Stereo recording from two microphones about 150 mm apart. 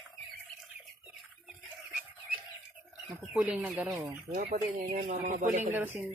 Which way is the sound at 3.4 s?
10° right (ahead or behind).